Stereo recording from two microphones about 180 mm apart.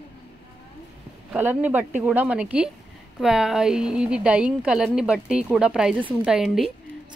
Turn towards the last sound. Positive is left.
turn(degrees=0)  # may be behind; listen again after turning